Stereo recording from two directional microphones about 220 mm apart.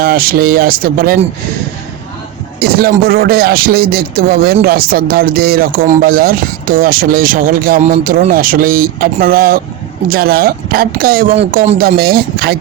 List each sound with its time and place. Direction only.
0.0 s a man's voice: 40° right (ahead or behind)
2.6 s a man's voice: 45° right (ahead or behind)
11.5 s speech: 30° right (ahead or behind)
11.8 s a man's voice: 45° right (ahead or behind)